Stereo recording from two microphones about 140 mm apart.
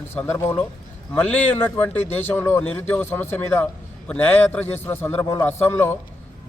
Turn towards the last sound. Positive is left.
turn(degrees=15)  # may be behind; listen again after turning